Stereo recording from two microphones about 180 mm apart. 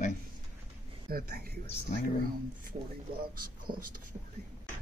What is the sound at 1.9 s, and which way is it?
Speech, 40° left (ahead or behind).